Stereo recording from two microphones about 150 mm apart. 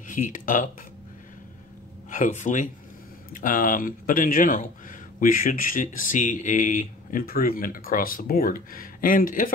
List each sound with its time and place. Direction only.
0.1 s speech: 65° left (ahead or behind)
2.0 s speech: 60° left (ahead or behind)